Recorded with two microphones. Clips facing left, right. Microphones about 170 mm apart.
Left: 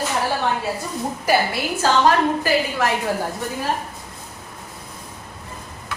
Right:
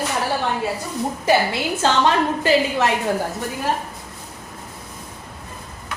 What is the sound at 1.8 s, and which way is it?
A woman's voice, 25° right (ahead or behind).